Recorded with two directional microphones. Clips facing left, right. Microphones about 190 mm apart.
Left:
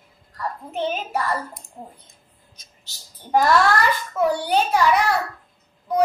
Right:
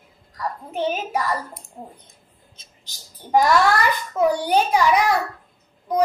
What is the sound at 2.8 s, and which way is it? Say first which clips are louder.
A child's voice: right 1 dB; 15° right (ahead or behind).